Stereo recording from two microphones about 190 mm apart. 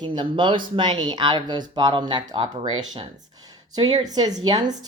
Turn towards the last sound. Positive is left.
turn(degrees=-20)  # may be behind; listen again after turning